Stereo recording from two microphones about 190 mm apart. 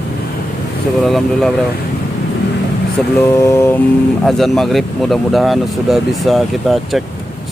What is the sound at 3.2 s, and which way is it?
Vehicle, 15° left (ahead or behind).